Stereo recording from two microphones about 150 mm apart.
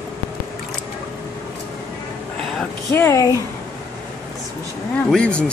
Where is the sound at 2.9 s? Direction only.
20° left (ahead or behind).